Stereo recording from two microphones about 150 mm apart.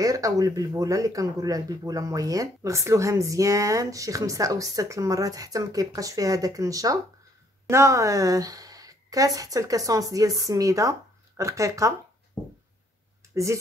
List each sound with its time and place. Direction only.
0.0 s speech: 25° right (ahead or behind)
13.3 s speech: 20° right (ahead or behind)